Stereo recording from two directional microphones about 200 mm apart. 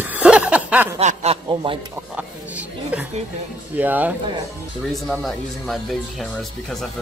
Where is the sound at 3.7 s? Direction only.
10° right (ahead or behind).